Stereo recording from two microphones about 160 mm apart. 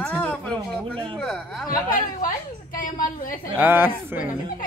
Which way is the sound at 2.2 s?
60° left (ahead or behind).